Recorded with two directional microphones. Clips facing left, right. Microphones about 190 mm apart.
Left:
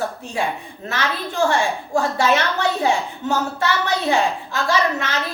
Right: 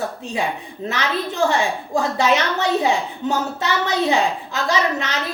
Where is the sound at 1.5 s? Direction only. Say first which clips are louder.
Even; 20° right (ahead or behind).